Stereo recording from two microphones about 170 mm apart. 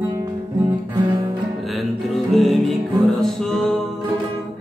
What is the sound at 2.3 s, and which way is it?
Music, centre (ahead or behind).